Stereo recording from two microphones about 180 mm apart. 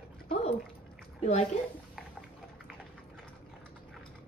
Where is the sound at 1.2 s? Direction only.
35° left (ahead or behind).